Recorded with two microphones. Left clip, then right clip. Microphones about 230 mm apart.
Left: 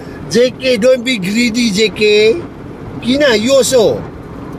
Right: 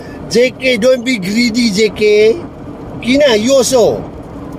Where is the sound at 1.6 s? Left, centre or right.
Left.